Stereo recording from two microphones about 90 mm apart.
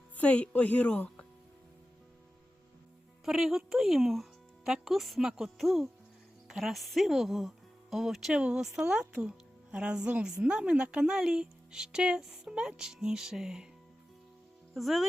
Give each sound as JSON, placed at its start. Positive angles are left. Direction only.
{"t": 0.2, "sound": "a woman's voice", "side_deg": 15}
{"t": 3.2, "sound": "a woman's voice", "side_deg": -5}
{"t": 14.7, "sound": "speech", "side_deg": 0}